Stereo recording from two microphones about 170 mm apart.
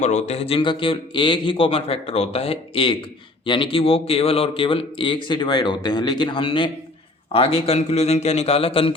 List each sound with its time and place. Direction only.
0.0 s a man's voice: 40° left (ahead or behind)